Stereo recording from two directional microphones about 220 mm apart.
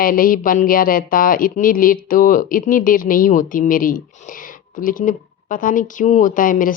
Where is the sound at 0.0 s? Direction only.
40° left (ahead or behind).